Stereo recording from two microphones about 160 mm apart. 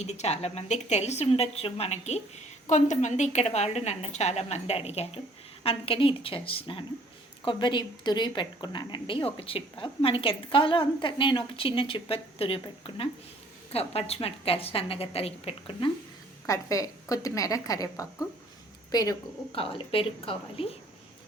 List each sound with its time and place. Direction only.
0.0 s a woman's voice: 45° left (ahead or behind)
16.5 s a woman's voice: 20° left (ahead or behind)
19.5 s a woman's voice: 35° left (ahead or behind)